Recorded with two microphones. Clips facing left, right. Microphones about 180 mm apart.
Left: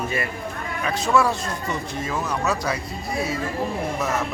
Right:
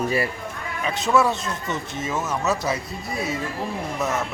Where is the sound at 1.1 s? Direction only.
Centre (ahead or behind).